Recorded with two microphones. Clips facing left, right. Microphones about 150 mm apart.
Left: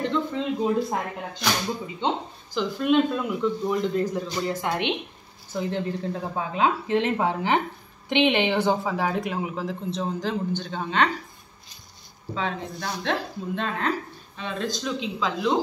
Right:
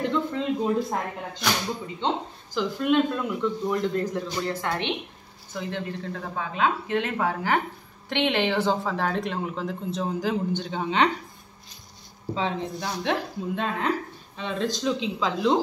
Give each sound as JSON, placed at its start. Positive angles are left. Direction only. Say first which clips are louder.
{"t": 0.0, "sound": "speech", "louder": "even", "side_deg": -5}
{"t": 5.5, "sound": "speech", "louder": "left 4 dB", "side_deg": 35}
{"t": 12.8, "sound": "speech", "louder": "left 1 dB", "side_deg": -10}
{"t": 14.3, "sound": "speech", "louder": "right 2 dB", "side_deg": -25}